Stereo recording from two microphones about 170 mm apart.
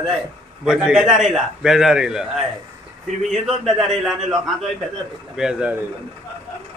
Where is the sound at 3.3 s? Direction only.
Centre (ahead or behind).